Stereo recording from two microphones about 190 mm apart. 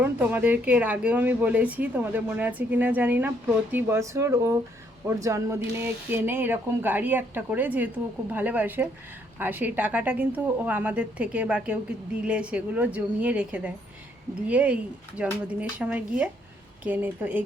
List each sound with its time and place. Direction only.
0.0 s speech: 10° right (ahead or behind)